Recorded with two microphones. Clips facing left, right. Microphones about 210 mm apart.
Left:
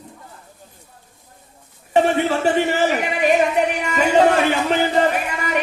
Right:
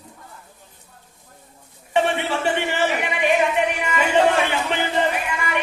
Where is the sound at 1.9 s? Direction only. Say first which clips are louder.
Left 4 dB; 40° left (ahead or behind).